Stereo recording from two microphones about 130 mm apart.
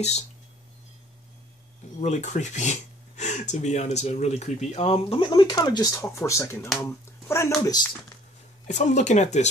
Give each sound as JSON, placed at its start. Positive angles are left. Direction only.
{"t": 2.0, "sound": "speech", "side_deg": 65}
{"t": 8.6, "sound": "speech", "side_deg": 65}